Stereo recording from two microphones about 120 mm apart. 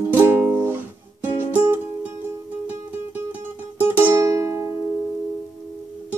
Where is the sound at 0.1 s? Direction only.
20° right (ahead or behind).